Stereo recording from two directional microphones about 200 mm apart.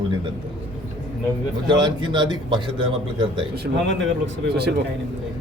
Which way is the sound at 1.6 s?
25° right (ahead or behind).